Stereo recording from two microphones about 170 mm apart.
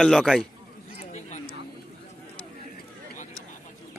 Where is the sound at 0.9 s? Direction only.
40° left (ahead or behind).